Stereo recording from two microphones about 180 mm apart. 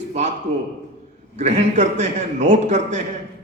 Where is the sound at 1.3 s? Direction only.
40° right (ahead or behind).